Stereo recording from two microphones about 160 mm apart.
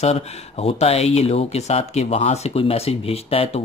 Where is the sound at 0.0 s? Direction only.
40° left (ahead or behind).